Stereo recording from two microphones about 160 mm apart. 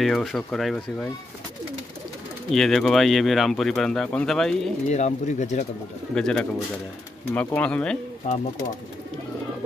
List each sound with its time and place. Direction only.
0.0 s speech: centre (ahead or behind)
2.5 s speech: centre (ahead or behind)
4.8 s speech: 45° left (ahead or behind)
6.1 s speech: 5° left (ahead or behind)
8.2 s speech: 55° left (ahead or behind)